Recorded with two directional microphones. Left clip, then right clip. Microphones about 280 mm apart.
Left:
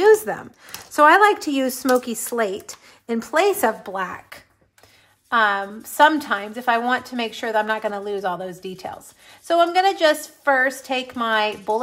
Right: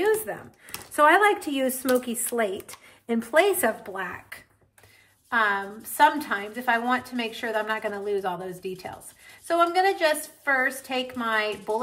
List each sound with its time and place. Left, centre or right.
0.0 s a woman's voice: centre